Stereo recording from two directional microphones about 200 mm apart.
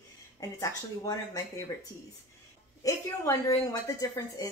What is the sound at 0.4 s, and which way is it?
A woman's voice, 15° left (ahead or behind).